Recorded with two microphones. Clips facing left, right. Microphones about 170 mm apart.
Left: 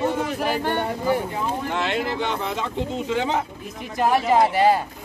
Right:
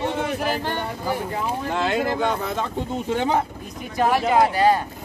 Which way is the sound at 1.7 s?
40° right (ahead or behind).